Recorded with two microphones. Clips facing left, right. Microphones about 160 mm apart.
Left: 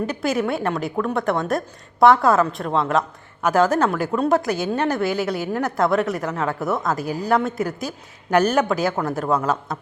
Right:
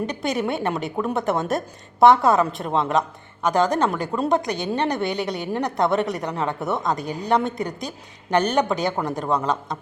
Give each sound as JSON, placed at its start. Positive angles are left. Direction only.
{"t": 0.0, "sound": "a woman's voice", "side_deg": 5}
{"t": 8.9, "sound": "speech", "side_deg": -15}
{"t": 9.2, "sound": "a woman's voice", "side_deg": 5}